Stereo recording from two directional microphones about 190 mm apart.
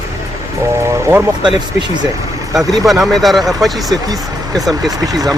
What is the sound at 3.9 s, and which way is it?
Speech, 20° right (ahead or behind).